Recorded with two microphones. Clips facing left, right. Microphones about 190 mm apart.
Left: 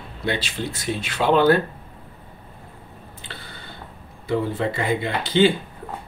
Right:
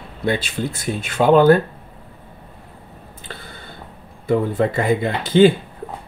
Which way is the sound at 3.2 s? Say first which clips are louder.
Right 4 dB; 45° right (ahead or behind).